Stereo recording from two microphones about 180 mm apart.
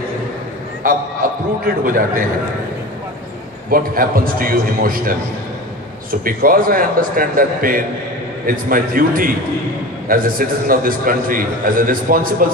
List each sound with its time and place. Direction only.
1.9 s a man's voice: 50° right (ahead or behind)
3.7 s a man's voice: 50° right (ahead or behind)
6.2 s a man's voice: 50° right (ahead or behind)